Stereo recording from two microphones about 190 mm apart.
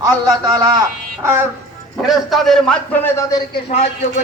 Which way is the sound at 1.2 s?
10° right (ahead or behind).